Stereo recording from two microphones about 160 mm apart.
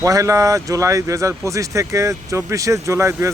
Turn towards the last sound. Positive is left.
turn(degrees=-20)  # may be behind; listen again after turning